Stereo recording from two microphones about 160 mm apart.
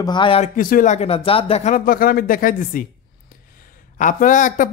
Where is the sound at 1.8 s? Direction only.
65° left (ahead or behind).